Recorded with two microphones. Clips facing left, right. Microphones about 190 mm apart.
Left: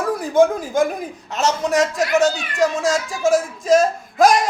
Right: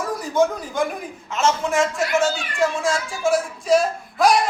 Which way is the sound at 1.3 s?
40° left (ahead or behind).